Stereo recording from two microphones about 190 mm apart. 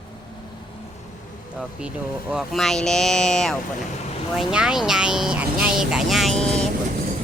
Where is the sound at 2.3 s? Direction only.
Centre (ahead or behind).